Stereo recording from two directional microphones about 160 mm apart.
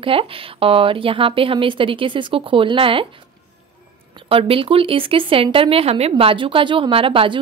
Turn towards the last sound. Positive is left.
turn(degrees=-35)  # may be behind; listen again after turning